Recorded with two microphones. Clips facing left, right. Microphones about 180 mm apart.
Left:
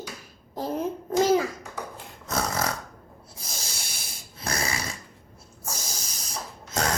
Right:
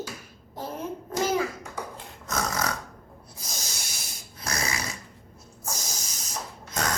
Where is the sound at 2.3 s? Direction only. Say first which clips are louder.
Left 1 dB; 30° left (ahead or behind).